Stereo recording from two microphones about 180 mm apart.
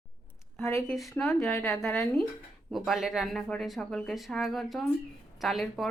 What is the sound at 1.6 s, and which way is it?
Speech, centre (ahead or behind).